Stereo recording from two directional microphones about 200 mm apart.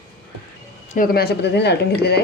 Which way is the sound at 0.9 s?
45° left (ahead or behind).